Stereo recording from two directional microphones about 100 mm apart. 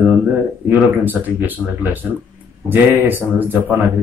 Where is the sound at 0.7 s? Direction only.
15° right (ahead or behind).